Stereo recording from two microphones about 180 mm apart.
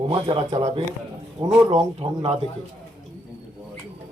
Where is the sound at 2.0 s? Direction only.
30° right (ahead or behind).